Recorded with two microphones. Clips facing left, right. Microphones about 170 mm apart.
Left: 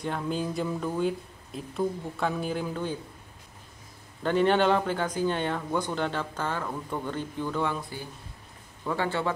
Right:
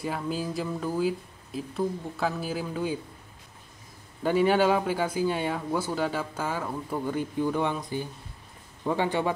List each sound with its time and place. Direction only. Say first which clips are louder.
0.0 s speech: even; 5° right (ahead or behind)
4.2 s speech: right 1 dB; 10° right (ahead or behind)